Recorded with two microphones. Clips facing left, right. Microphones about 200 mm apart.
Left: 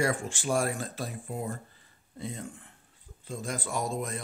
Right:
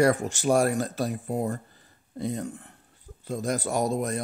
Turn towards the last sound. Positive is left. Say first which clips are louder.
# right 6 dB
turn(degrees=-40)  # may be behind; listen again after turning